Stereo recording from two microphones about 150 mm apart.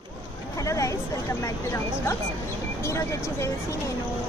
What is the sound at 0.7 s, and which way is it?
Speech, 20° left (ahead or behind).